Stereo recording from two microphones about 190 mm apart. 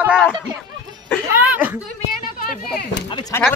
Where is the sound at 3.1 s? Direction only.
25° left (ahead or behind).